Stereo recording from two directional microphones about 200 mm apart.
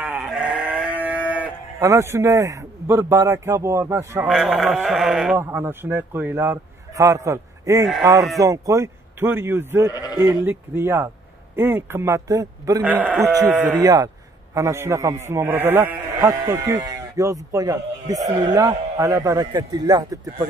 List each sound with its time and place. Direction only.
0.0 s sheep: 10° right (ahead or behind)
4.3 s a man's voice: centre (ahead or behind); by 20.4 s 20° right (ahead or behind)